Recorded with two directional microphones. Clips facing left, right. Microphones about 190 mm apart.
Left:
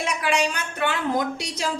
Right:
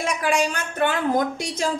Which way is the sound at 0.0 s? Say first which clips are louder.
Right 2 dB; 45° right (ahead or behind).